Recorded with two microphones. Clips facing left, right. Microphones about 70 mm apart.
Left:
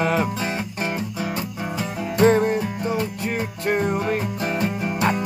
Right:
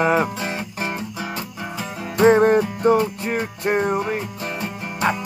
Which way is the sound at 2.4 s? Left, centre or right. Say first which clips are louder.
Right 6 dB; right.